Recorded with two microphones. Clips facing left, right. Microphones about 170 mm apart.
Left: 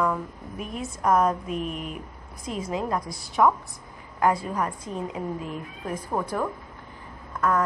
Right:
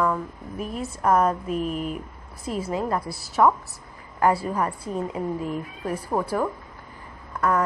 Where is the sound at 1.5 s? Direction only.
35° right (ahead or behind).